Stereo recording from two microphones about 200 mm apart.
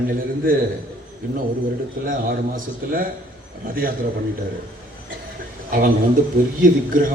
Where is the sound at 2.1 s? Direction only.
45° right (ahead or behind).